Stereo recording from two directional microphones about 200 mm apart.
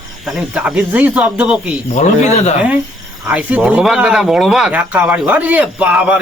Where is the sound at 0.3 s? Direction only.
5° right (ahead or behind).